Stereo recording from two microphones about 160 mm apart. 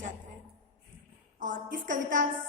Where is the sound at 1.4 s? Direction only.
55° right (ahead or behind).